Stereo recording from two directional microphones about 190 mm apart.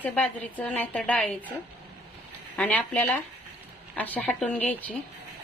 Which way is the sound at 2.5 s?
5° left (ahead or behind).